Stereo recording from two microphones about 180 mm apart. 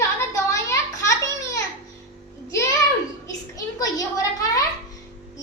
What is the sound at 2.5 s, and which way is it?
Music, 15° left (ahead or behind).